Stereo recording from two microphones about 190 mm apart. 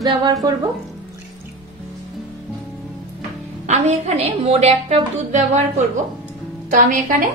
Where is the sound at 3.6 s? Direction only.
35° right (ahead or behind).